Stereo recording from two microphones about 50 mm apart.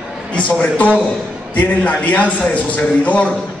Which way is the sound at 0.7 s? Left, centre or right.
Left.